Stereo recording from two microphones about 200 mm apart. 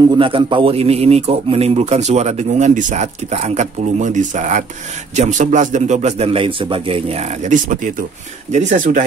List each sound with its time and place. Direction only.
0.0 s speech: 25° right (ahead or behind); by 9.0 s 40° right (ahead or behind)